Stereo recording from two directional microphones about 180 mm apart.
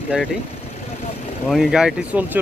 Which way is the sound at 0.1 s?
5° right (ahead or behind).